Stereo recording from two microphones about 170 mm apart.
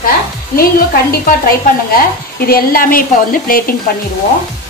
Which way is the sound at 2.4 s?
60° left (ahead or behind).